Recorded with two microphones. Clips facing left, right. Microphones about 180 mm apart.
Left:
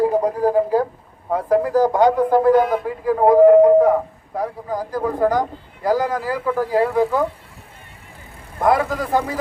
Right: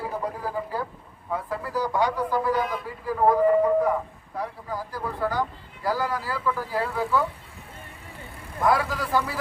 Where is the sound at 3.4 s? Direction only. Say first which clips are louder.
Left 14 dB; 70° left (ahead or behind); by 7.2 s 50° left (ahead or behind).